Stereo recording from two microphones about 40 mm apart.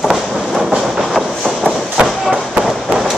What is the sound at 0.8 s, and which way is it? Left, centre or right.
Train, centre.